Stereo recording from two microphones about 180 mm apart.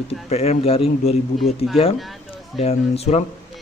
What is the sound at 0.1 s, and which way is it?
A man's voice, 35° left (ahead or behind).